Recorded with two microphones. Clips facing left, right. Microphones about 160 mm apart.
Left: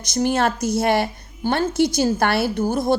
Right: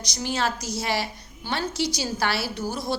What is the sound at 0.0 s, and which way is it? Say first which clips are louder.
A woman's voice: left 8 dB; 50° left (ahead or behind).